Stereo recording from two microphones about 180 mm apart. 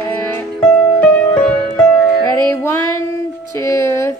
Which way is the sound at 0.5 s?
5° left (ahead or behind).